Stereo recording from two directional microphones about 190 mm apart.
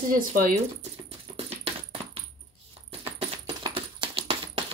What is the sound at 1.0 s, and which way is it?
Music, 30° right (ahead or behind).